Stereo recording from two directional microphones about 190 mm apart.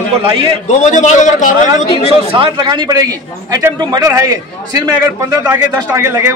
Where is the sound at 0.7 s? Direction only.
40° left (ahead or behind).